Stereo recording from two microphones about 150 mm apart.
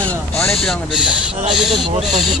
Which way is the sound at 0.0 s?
5° left (ahead or behind).